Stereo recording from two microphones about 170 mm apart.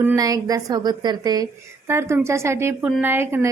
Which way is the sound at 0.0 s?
15° right (ahead or behind).